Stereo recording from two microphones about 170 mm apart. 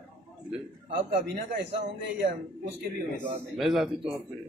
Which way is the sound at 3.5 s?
Centre (ahead or behind).